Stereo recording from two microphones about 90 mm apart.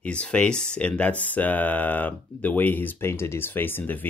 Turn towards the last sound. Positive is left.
turn(degrees=20)  # may be behind; listen again after turning